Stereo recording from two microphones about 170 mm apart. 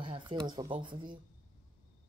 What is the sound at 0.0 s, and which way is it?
Speech, 30° right (ahead or behind).